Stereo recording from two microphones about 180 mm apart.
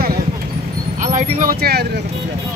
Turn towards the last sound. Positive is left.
turn(degrees=-60)  # may be behind; listen again after turning